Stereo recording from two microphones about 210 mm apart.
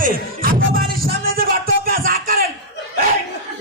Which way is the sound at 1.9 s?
45° right (ahead or behind).